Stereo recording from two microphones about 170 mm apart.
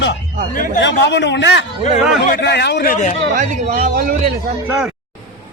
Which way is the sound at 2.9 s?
45° left (ahead or behind).